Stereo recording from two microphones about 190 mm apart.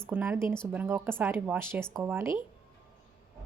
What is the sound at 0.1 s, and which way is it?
A woman's voice, 10° right (ahead or behind).